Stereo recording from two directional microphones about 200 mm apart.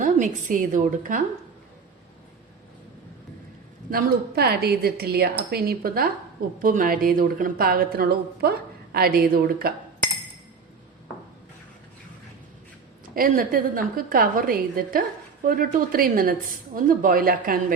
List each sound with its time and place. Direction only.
0.0 s a woman's voice: 40° right (ahead or behind)
3.9 s a woman's voice: 50° right (ahead or behind)
13.1 s a woman's voice: 45° right (ahead or behind)